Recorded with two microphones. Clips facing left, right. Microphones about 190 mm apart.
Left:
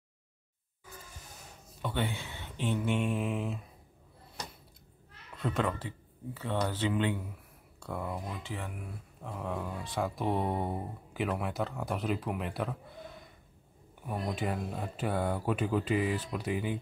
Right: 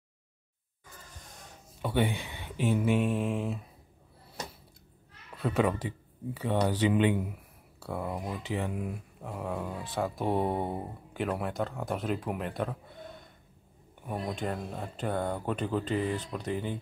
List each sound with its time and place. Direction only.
1.8 s speech: 10° right (ahead or behind)
5.4 s speech: 10° right (ahead or behind)
7.8 s speech: 5° right (ahead or behind)
8.1 s speech: 20° right (ahead or behind)
9.2 s speech: 5° right (ahead or behind)
14.0 s speech: centre (ahead or behind)